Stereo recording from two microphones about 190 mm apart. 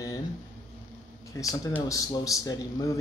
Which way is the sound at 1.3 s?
15° left (ahead or behind).